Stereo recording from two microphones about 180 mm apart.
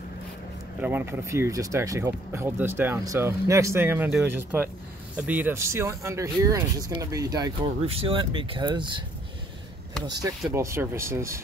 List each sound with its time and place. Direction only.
0.7 s speech: 10° right (ahead or behind); by 9.0 s 25° right (ahead or behind)
10.0 s speech: 20° right (ahead or behind)